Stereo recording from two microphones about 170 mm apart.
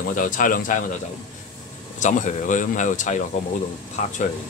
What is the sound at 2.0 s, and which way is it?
Speech, 45° left (ahead or behind).